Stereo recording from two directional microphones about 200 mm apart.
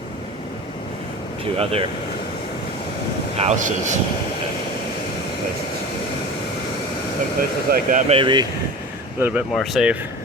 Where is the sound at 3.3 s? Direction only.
35° right (ahead or behind).